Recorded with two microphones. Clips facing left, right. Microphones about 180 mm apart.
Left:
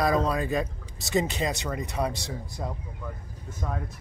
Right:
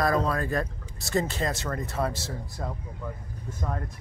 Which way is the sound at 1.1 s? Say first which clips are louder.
Left 1 dB; 20° left (ahead or behind).